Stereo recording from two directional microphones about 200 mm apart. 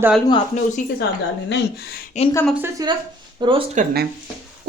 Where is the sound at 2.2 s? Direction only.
35° left (ahead or behind).